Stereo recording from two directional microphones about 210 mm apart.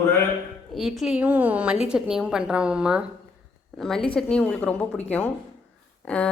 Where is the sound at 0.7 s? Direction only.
Centre (ahead or behind).